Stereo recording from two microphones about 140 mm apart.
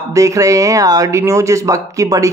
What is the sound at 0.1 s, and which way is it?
Speech, 25° right (ahead or behind).